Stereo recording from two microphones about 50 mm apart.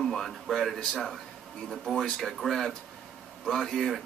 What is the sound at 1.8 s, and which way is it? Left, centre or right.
Speech, centre.